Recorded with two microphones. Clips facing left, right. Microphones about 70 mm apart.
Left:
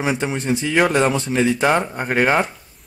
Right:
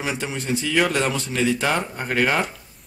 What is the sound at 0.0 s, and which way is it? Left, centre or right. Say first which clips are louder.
A man's voice: left 6 dB; left.